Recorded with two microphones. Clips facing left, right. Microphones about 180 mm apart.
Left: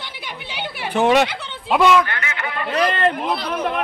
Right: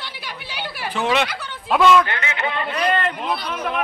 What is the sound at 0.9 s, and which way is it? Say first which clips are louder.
Speech: left 6 dB; 55° left (ahead or behind).